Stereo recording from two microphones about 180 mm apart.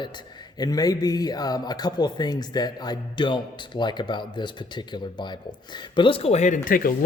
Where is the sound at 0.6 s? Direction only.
20° left (ahead or behind).